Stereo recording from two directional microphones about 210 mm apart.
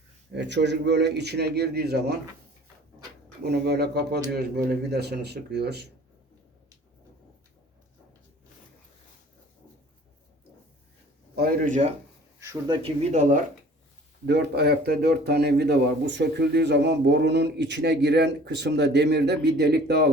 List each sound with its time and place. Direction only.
0.3 s a man's voice: 55° right (ahead or behind)
3.4 s a man's voice: 50° right (ahead or behind)
11.3 s a man's voice: 45° right (ahead or behind)
12.4 s speech: 20° right (ahead or behind)
14.3 s a man's voice: 50° right (ahead or behind)